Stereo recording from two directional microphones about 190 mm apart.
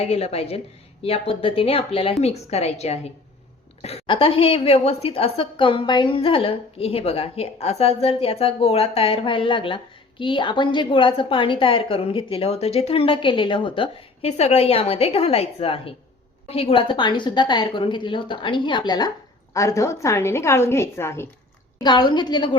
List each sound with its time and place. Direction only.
0.0 s a woman's voice: 30° left (ahead or behind)